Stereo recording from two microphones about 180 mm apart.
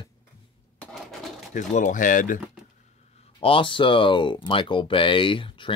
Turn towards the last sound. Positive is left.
turn(degrees=25)  # may be behind; listen again after turning